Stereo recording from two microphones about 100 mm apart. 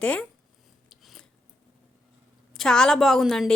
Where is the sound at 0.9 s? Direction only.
Centre (ahead or behind).